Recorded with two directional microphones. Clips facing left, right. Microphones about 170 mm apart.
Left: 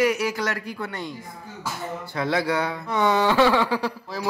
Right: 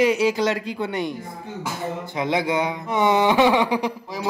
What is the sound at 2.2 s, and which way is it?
Speech, 20° right (ahead or behind).